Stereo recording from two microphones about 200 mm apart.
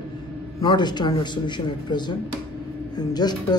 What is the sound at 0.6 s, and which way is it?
A man's voice, 20° left (ahead or behind).